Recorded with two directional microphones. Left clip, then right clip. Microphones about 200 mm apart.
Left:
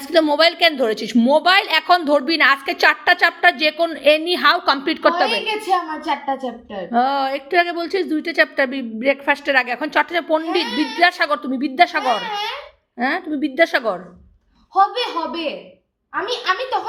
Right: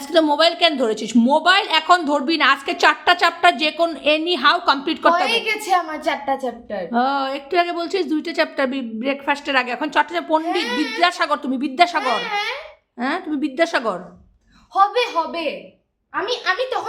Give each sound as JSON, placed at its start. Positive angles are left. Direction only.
{"t": 0.1, "sound": "a woman's voice", "side_deg": -5}
{"t": 5.5, "sound": "a child's voice", "side_deg": -30}
{"t": 6.9, "sound": "a woman's voice", "side_deg": 0}
{"t": 14.7, "sound": "a child's voice", "side_deg": -25}
{"t": 16.1, "sound": "a woman's voice", "side_deg": 0}